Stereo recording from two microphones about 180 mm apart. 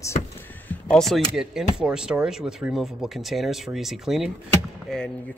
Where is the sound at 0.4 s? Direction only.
10° left (ahead or behind).